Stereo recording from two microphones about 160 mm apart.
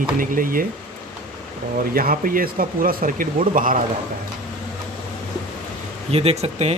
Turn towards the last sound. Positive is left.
turn(degrees=-40)  # may be behind; listen again after turning